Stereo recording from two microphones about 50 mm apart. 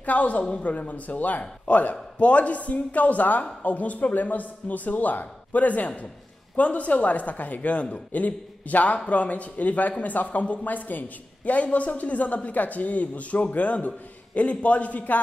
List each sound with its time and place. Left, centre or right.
0.0 s a man's voice: left